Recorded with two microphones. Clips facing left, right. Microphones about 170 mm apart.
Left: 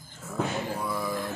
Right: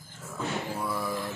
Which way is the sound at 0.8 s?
5° right (ahead or behind).